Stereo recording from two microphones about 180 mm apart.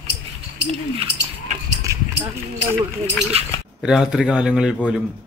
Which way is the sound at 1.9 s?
15° right (ahead or behind).